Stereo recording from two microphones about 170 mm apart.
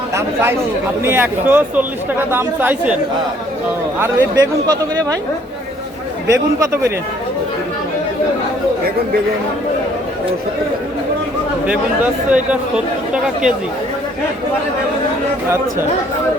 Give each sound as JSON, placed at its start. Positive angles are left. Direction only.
{"t": 0.1, "sound": "speech", "side_deg": -15}
{"t": 4.0, "sound": "speech", "side_deg": -15}
{"t": 6.2, "sound": "speech", "side_deg": -15}
{"t": 11.6, "sound": "speech", "side_deg": -5}